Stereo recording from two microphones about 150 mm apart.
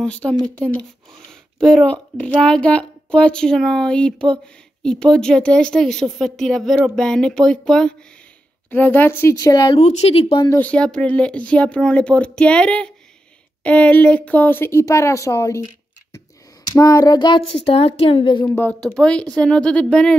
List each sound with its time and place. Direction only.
0.0 s speech: 5° left (ahead or behind); by 9.8 s 25° left (ahead or behind)
9.8 s speech: 45° left (ahead or behind)
10.5 s speech: 10° left (ahead or behind)
16.7 s speech: 25° left (ahead or behind)
18.5 s speech: 10° left (ahead or behind)